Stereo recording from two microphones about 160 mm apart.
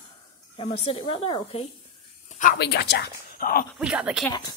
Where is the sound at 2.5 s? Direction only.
90° left; by 3.6 s 65° left (ahead or behind).